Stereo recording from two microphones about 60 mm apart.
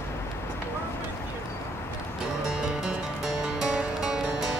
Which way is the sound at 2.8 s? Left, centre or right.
Centre.